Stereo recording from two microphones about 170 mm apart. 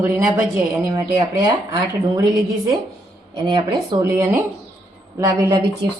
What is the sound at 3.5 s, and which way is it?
A woman's voice, 25° right (ahead or behind).